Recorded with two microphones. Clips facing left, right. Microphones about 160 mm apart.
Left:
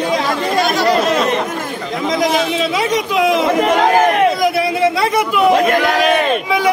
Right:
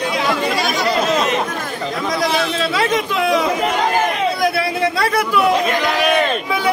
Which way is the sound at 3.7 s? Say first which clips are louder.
Left 6 dB; 70° left (ahead or behind).